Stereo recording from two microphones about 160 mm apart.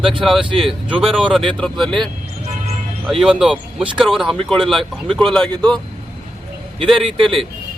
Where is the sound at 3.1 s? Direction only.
Centre (ahead or behind).